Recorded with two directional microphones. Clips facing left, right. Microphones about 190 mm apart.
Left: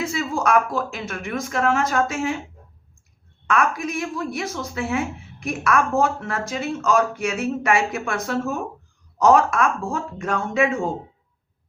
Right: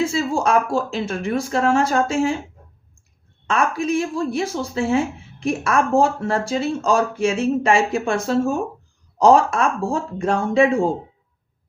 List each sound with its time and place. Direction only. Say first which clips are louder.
0.0 s speech: right 4 dB; 30° right (ahead or behind)
3.4 s speech: right 1 dB; 30° right (ahead or behind)